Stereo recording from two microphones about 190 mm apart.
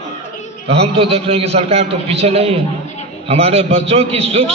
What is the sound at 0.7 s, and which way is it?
A man's voice, 30° right (ahead or behind).